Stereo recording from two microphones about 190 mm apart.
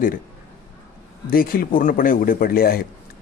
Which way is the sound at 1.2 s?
50° left (ahead or behind).